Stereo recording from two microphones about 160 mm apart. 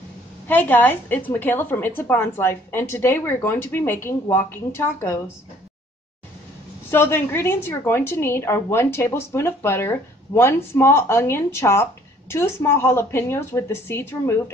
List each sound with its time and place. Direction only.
0.5 s a woman's voice: 10° left (ahead or behind)
6.9 s a woman's voice: 15° left (ahead or behind)